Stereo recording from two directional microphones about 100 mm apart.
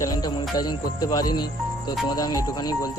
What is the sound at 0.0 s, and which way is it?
Speech, 40° left (ahead or behind).